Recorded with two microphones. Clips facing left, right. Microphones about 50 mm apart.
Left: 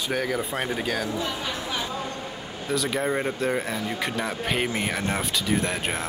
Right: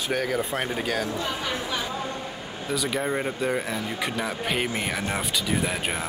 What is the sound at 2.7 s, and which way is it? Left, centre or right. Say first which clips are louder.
Speech: left 1 dB; centre.